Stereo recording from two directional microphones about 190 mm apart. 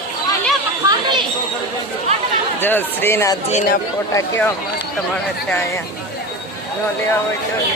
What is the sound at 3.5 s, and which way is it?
Speech, 40° left (ahead or behind).